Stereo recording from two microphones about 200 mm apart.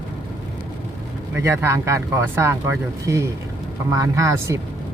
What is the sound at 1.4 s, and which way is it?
Speech, 15° right (ahead or behind).